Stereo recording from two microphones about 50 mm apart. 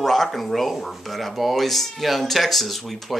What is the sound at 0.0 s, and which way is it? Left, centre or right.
Speech, centre.